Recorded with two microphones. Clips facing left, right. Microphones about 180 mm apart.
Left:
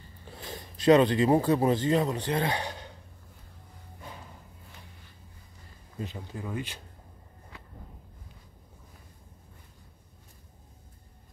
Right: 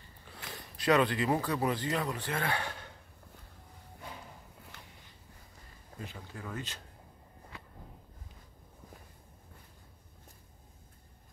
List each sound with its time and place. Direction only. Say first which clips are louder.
0.7 s speech: left 7 dB; 20° left (ahead or behind)
5.9 s speech: left 7 dB; 20° left (ahead or behind)